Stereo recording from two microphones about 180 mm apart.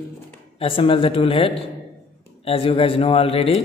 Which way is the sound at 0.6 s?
30° left (ahead or behind).